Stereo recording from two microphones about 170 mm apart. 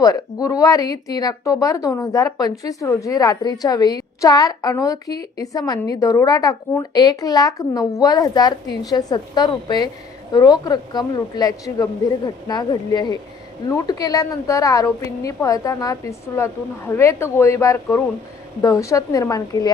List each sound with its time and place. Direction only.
0.0 s speech: 20° left (ahead or behind)